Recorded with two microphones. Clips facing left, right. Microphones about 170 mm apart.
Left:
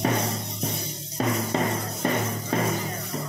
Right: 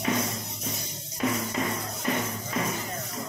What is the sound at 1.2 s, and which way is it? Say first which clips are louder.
Music: left 2 dB; 40° left (ahead or behind).